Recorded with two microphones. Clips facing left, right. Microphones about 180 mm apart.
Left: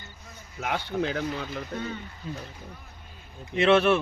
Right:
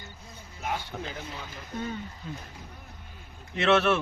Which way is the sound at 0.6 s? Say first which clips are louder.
Left 6 dB; 85° left.